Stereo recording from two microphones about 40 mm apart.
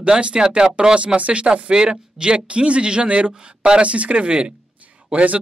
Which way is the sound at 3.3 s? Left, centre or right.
Right.